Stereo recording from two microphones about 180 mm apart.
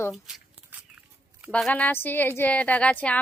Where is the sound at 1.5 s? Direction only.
5° left (ahead or behind).